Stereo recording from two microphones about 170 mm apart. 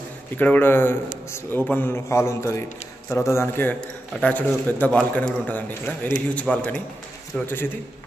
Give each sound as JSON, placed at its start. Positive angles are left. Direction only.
{"t": 0.4, "sound": "a man's voice", "side_deg": 10}